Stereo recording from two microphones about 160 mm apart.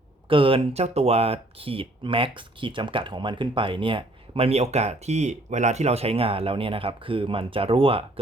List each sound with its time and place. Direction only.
0.3 s speech: 35° right (ahead or behind)